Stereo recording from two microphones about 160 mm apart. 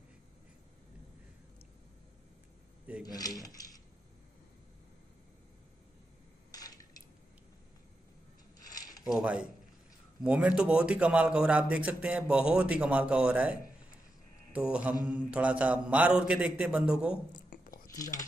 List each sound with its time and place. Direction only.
3.0 s coin: 25° left (ahead or behind)
6.5 s a sound: 25° left (ahead or behind)
8.6 s mechanisms: 25° left (ahead or behind)
9.0 s a man's voice: 5° right (ahead or behind)
17.8 s speech: 20° left (ahead or behind)